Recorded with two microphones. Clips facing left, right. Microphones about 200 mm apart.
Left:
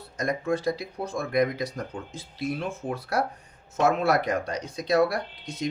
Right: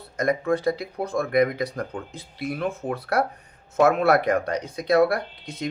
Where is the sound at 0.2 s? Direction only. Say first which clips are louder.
Right 4 dB; 55° right (ahead or behind).